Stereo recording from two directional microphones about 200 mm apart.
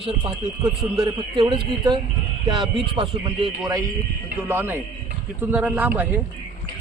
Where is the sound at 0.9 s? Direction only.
20° right (ahead or behind).